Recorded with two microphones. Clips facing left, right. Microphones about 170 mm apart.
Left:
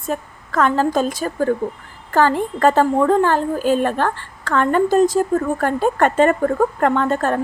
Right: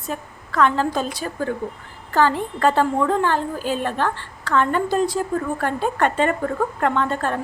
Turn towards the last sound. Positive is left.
turn(degrees=45)  # may be behind; listen again after turning